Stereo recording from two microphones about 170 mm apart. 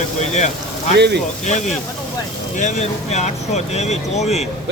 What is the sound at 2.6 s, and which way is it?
Speech, 45° left (ahead or behind).